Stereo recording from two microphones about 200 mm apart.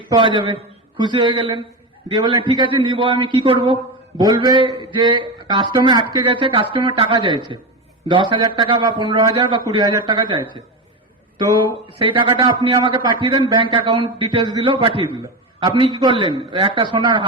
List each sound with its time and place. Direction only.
0.1 s a man's voice: 25° right (ahead or behind)
11.9 s a man's voice: 25° right (ahead or behind)